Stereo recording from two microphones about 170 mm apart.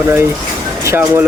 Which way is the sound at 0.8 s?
15° right (ahead or behind).